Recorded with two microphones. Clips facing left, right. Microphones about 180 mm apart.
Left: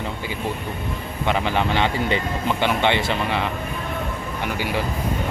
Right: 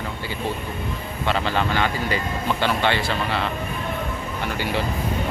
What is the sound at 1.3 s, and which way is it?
Speech, 15° left (ahead or behind).